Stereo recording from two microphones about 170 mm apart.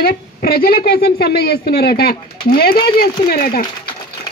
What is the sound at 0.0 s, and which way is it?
Speech, 60° left (ahead or behind).